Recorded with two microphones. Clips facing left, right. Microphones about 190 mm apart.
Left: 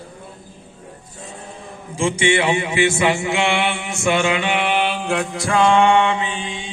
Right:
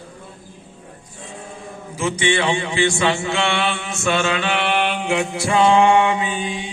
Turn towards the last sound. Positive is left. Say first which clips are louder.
# right 2 dB
turn(degrees=-15)  # may be behind; listen again after turning